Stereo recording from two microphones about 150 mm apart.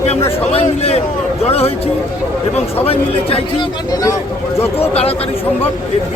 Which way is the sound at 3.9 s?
25° left (ahead or behind).